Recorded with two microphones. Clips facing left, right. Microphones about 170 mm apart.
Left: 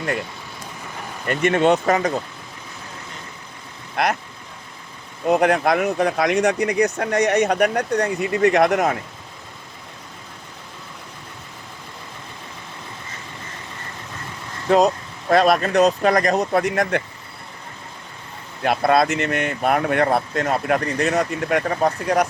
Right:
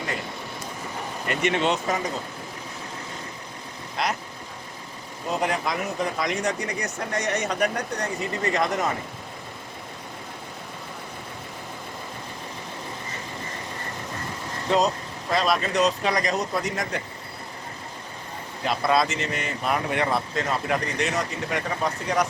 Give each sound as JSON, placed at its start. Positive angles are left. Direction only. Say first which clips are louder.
{"t": 1.3, "sound": "speech", "louder": "left 7 dB", "side_deg": 50}
{"t": 3.9, "sound": "speech", "louder": "left 6 dB", "side_deg": 60}
{"t": 5.3, "sound": "speech", "louder": "left 9 dB", "side_deg": 65}
{"t": 15.3, "sound": "speech", "louder": "left 7 dB", "side_deg": 55}
{"t": 18.6, "sound": "speech", "louder": "left 5 dB", "side_deg": 60}